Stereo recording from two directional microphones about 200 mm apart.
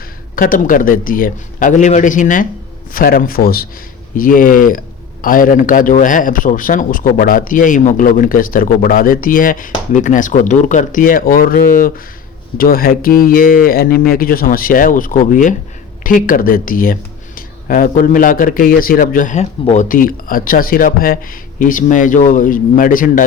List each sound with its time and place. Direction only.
0.3 s a man's voice: 45° left (ahead or behind)